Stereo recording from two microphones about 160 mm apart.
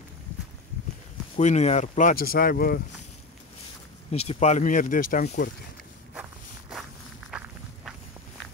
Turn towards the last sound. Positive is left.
turn(degrees=0)  # may be behind; listen again after turning